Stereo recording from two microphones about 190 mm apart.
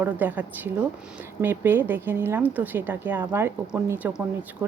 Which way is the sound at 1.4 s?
10° right (ahead or behind).